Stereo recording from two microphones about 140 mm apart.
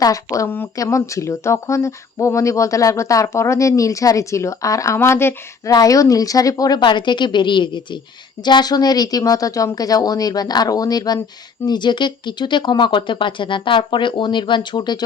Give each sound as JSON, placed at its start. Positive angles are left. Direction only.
{"t": 0.0, "sound": "speech", "side_deg": 25}